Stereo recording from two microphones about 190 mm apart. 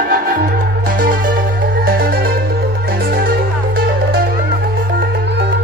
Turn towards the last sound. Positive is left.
turn(degrees=-50)  # may be behind; listen again after turning